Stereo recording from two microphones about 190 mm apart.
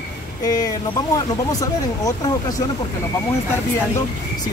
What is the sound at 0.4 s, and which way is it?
Speech, 20° left (ahead or behind).